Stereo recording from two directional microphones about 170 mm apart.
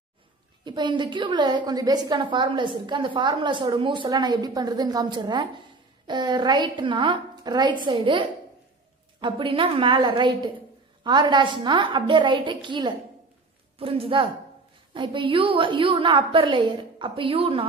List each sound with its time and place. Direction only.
0.7 s a woman's voice: 25° right (ahead or behind)